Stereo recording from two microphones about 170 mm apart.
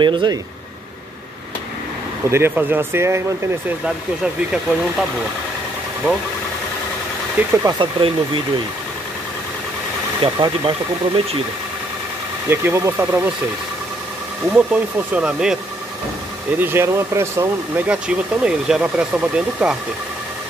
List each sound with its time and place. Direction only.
0.0 s speech: 25° right (ahead or behind)
2.2 s speech: 15° right (ahead or behind)
3.8 s speech: 5° right (ahead or behind)
7.3 s speech: 15° right (ahead or behind)
7.8 s speech: 30° right (ahead or behind)
10.2 s speech: 30° right (ahead or behind)
12.4 s speech: 15° right (ahead or behind)
14.5 s speech: 10° right (ahead or behind)